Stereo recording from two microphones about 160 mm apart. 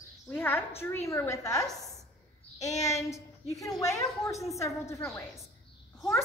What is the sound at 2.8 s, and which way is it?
A woman's voice, 20° left (ahead or behind).